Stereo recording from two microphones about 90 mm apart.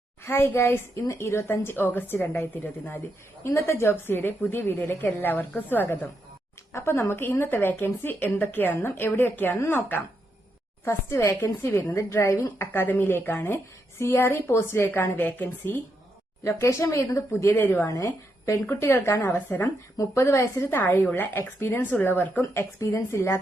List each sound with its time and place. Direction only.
0.3 s a woman's voice: 25° left (ahead or behind)
17.8 s a woman's voice: 35° left (ahead or behind)